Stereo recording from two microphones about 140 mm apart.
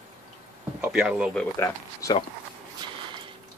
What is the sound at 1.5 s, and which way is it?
Speech, 25° left (ahead or behind).